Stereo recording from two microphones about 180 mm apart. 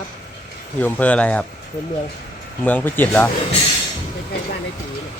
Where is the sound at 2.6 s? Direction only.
10° left (ahead or behind).